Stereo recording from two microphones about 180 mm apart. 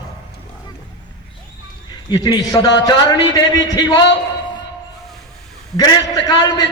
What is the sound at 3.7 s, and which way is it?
Speech, 25° left (ahead or behind).